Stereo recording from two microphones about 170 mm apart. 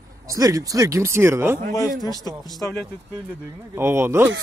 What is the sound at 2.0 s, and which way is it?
Speech, 20° left (ahead or behind).